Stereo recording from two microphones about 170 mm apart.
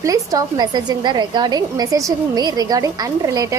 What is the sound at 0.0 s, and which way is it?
A woman's voice, 20° right (ahead or behind).